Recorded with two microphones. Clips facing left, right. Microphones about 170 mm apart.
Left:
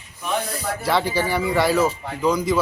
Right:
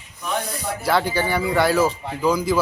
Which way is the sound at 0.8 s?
Centre (ahead or behind).